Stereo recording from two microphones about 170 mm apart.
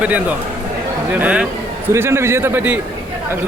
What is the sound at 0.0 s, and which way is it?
Speech, 10° right (ahead or behind).